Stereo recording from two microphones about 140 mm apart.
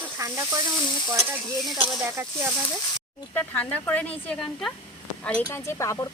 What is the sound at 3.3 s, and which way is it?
Speech, 10° left (ahead or behind).